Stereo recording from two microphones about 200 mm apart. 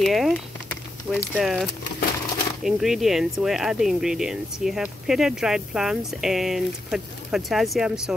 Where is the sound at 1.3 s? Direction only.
Centre (ahead or behind).